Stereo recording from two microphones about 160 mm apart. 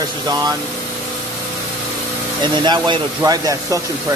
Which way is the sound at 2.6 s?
25° right (ahead or behind).